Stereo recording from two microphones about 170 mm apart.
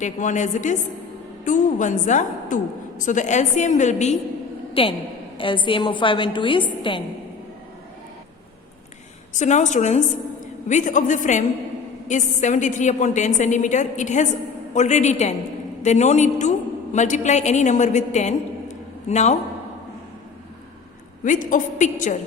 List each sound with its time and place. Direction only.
0.0 s a woman's voice: 45° left (ahead or behind)
4.7 s a woman's voice: 30° left (ahead or behind)
9.3 s a woman's voice: 45° left (ahead or behind)
21.2 s a woman's voice: 50° left (ahead or behind)